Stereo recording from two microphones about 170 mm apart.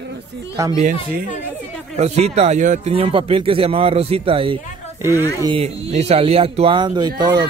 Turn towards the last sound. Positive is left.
turn(degrees=-25)  # may be behind; listen again after turning